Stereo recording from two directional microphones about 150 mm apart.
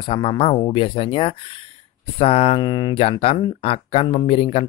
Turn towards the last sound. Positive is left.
turn(degrees=40)  # may be behind; listen again after turning